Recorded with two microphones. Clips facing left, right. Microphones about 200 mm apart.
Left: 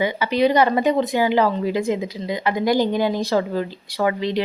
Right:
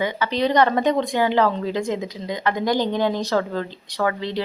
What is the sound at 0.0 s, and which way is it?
Speech, 10° left (ahead or behind).